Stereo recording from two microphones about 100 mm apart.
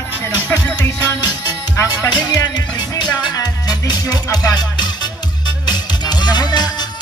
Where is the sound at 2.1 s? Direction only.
45° left (ahead or behind).